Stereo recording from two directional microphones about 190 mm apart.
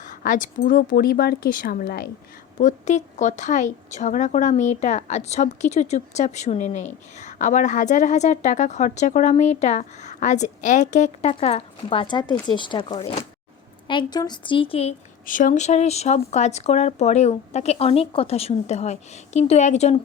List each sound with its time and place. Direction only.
0.0 s a woman's voice: 45° left (ahead or behind)
15.3 s a woman's voice: 45° left (ahead or behind)